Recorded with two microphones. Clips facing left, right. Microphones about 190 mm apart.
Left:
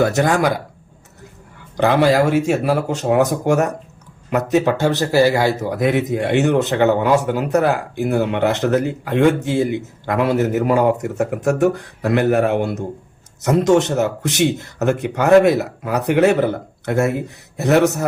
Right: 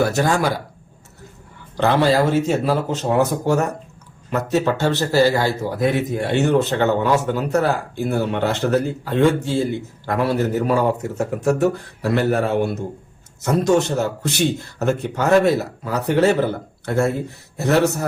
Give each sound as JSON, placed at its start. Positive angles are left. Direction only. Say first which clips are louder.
{"t": 0.0, "sound": "speech", "louder": "left 2 dB", "side_deg": 20}
{"t": 1.8, "sound": "speech", "louder": "left 2 dB", "side_deg": 15}